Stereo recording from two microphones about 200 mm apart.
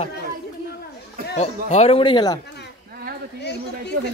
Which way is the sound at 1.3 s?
35° left (ahead or behind).